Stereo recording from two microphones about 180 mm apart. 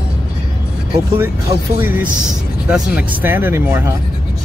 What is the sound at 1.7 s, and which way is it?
Speech, 10° right (ahead or behind).